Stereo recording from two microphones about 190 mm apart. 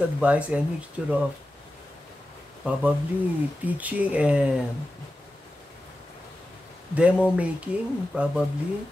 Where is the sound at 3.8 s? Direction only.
10° right (ahead or behind).